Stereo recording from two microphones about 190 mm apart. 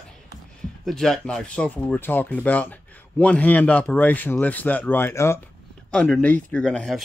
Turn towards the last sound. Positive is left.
turn(degrees=5)  # may be behind; listen again after turning